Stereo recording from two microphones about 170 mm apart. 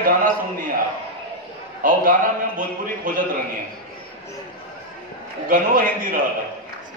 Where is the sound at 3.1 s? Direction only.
55° right (ahead or behind).